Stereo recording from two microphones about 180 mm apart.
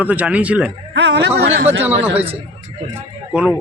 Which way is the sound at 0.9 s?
75° right (ahead or behind).